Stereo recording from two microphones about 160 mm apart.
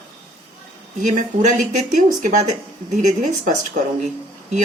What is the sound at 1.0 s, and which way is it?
Speech, 50° right (ahead or behind).